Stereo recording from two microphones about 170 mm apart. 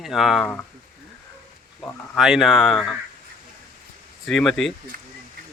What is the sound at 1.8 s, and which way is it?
Speech, 10° left (ahead or behind).